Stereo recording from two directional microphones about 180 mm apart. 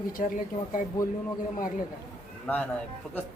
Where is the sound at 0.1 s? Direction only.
50° left (ahead or behind).